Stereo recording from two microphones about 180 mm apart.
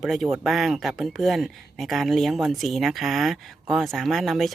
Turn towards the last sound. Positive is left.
turn(degrees=0)  # may be behind; listen again after turning